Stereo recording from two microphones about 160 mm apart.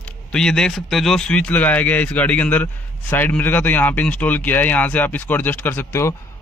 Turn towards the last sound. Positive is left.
turn(degrees=15)  # may be behind; listen again after turning